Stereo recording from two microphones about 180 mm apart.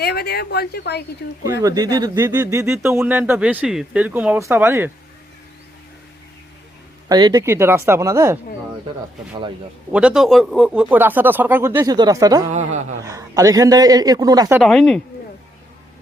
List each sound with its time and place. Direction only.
0.0 s a woman's voice: 60° left (ahead or behind)
1.5 s speech: 15° right (ahead or behind)
7.1 s speech: 20° right (ahead or behind)
9.9 s speech: 5° right (ahead or behind)
12.5 s a man's voice: 40° right (ahead or behind)
13.0 s a man's voice: 20° right (ahead or behind)
14.6 s speech: centre (ahead or behind)